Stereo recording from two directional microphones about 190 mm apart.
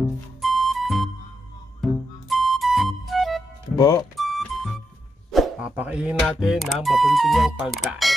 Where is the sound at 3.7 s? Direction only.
15° left (ahead or behind).